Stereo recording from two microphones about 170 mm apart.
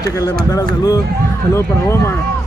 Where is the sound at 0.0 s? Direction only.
20° left (ahead or behind).